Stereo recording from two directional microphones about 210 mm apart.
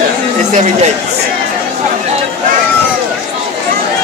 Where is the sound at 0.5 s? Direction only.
35° right (ahead or behind).